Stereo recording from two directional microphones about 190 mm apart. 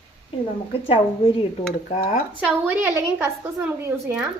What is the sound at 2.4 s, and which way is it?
A woman's voice, 10° right (ahead or behind).